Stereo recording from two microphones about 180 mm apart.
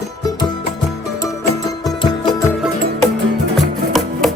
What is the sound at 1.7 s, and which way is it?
Music, 25° left (ahead or behind).